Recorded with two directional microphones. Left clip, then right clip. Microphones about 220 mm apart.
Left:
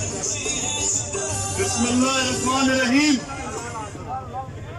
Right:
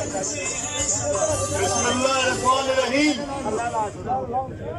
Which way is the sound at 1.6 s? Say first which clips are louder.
Right 1 dB; 50° left (ahead or behind).